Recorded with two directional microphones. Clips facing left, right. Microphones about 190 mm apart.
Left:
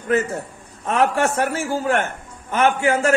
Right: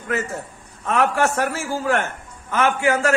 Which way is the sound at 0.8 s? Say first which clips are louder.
Left 1 dB; 30° left (ahead or behind).